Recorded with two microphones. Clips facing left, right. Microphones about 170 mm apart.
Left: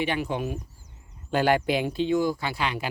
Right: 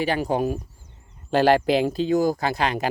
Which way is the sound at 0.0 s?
40° right (ahead or behind).